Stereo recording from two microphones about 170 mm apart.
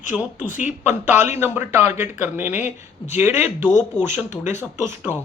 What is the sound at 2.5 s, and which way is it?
Speech, 45° left (ahead or behind).